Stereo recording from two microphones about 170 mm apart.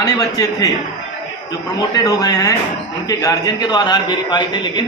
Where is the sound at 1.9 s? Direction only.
20° left (ahead or behind).